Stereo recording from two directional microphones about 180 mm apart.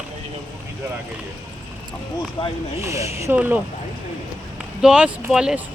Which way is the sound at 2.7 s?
15° right (ahead or behind).